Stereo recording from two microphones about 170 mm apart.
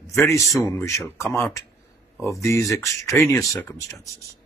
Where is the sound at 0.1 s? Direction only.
15° left (ahead or behind).